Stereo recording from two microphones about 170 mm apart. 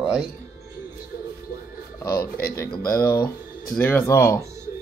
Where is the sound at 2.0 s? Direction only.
65° left (ahead or behind).